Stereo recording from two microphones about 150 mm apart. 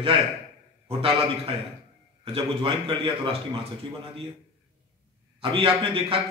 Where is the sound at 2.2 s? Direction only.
40° right (ahead or behind).